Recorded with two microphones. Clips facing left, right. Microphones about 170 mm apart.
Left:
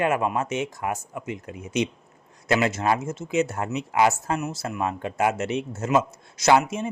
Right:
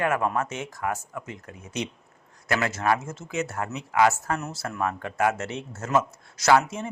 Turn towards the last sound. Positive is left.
turn(degrees=20)  # may be behind; listen again after turning